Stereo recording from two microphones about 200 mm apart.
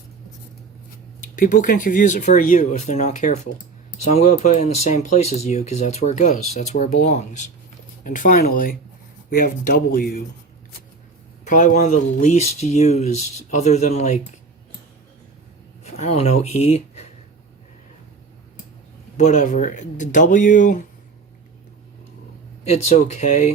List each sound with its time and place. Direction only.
1.2 s speech: 40° left (ahead or behind)
11.4 s speech: 40° left (ahead or behind)
15.8 s speech: 30° left (ahead or behind)
19.1 s speech: 35° left (ahead or behind)
22.6 s speech: 35° left (ahead or behind)